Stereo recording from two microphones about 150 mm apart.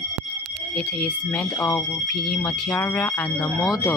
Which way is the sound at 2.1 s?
5° left (ahead or behind).